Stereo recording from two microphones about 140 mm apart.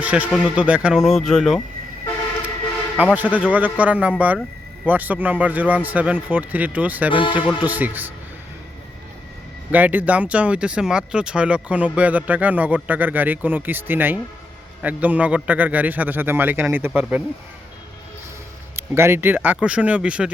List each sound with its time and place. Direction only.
0.0 s speech: 10° right (ahead or behind)
3.0 s speech: 10° right (ahead or behind)
7.1 s speech: 35° left (ahead or behind)
7.4 s speech: 10° right (ahead or behind)
9.7 s speech: 10° right (ahead or behind)
18.8 s speech: 15° right (ahead or behind)